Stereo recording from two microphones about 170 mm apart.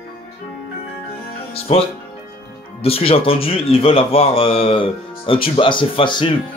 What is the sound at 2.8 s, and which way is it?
A man's voice, 35° left (ahead or behind).